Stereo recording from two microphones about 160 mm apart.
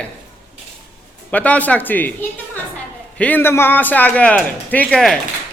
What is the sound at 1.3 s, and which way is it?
Speech, 10° left (ahead or behind).